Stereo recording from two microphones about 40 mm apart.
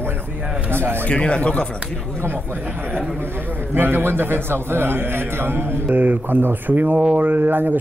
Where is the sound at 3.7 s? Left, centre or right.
Right.